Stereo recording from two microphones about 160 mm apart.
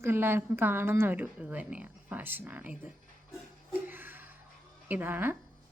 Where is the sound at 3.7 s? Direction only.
10° right (ahead or behind).